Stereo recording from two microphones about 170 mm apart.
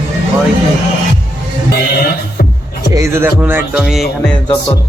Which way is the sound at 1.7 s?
65° left (ahead or behind).